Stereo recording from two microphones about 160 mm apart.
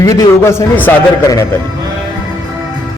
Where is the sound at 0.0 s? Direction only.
20° left (ahead or behind).